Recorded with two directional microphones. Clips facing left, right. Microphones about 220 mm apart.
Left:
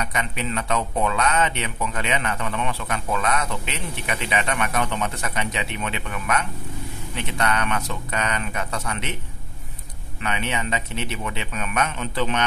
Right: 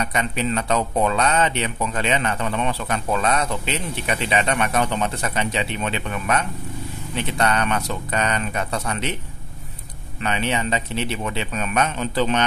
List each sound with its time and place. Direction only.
0.0 s speech: 35° right (ahead or behind)
10.2 s speech: 30° right (ahead or behind)